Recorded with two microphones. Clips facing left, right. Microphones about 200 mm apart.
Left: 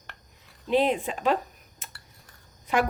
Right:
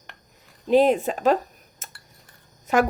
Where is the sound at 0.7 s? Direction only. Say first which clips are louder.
Right 6 dB; 40° right (ahead or behind).